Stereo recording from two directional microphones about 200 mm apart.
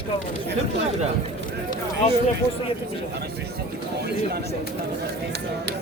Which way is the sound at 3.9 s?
55° right (ahead or behind).